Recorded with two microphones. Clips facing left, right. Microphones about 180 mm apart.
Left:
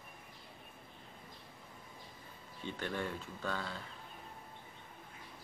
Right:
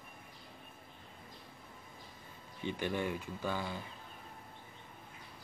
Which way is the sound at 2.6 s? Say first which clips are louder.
Right 4 dB; 15° right (ahead or behind).